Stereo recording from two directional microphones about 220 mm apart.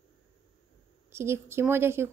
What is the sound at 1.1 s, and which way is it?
Speech, 10° right (ahead or behind).